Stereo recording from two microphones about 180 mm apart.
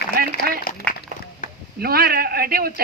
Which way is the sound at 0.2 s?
55° right (ahead or behind).